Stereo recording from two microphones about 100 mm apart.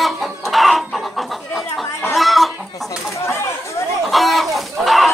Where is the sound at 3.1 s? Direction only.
30° left (ahead or behind).